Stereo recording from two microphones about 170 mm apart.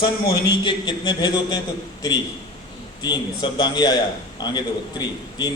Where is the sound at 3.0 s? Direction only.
25° left (ahead or behind).